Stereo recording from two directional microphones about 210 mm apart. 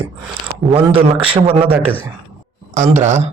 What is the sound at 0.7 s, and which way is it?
A man's voice, 25° right (ahead or behind).